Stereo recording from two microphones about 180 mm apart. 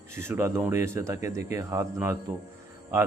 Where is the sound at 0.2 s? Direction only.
15° right (ahead or behind).